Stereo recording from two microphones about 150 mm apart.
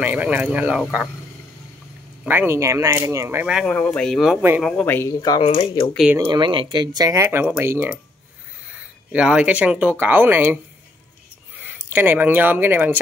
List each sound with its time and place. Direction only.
0.0 s speech: 10° right (ahead or behind)
2.2 s speech: 15° right (ahead or behind)
3.4 s speech: 5° right (ahead or behind)
3.7 s speech: 5° left (ahead or behind); by 4.6 s 10° right (ahead or behind)
4.6 s speech: 5° left (ahead or behind)
5.4 s speech: 40° left (ahead or behind)
6.2 s speech: 30° right (ahead or behind); by 8.0 s 15° right (ahead or behind)
9.1 s speech: 5° right (ahead or behind)
11.6 s speech: 15° right (ahead or behind)